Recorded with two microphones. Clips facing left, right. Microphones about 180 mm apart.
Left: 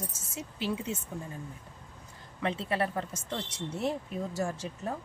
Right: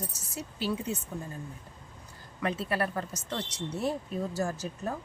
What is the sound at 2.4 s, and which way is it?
Speech, 25° left (ahead or behind).